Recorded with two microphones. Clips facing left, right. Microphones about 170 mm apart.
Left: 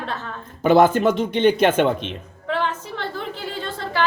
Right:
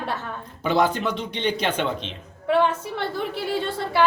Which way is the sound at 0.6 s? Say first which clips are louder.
Left 7 dB; 50° left (ahead or behind).